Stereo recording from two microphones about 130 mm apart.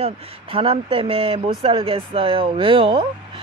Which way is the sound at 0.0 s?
45° right (ahead or behind).